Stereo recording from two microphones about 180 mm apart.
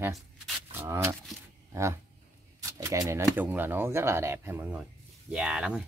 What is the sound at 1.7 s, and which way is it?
Speech, 15° right (ahead or behind).